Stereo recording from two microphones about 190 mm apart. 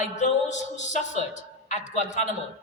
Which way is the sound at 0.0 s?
40° left (ahead or behind).